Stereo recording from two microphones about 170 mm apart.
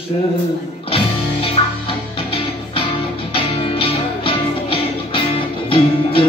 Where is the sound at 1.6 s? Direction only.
30° left (ahead or behind).